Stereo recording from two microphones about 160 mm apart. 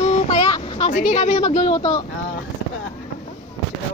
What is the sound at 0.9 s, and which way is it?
Speech, 50° left (ahead or behind).